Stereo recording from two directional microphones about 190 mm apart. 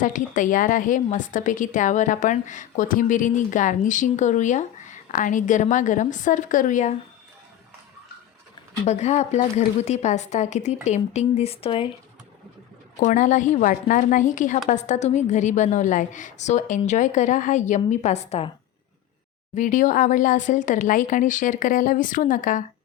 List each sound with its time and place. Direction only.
0.0 s a woman's voice: 45° left (ahead or behind)
8.9 s a woman's voice: 35° left (ahead or behind)
13.0 s a woman's voice: 40° left (ahead or behind)
19.5 s speech: 40° left (ahead or behind)